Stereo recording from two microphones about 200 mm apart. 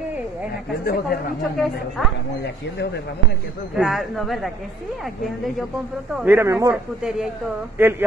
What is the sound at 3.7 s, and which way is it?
Speech, centre (ahead or behind).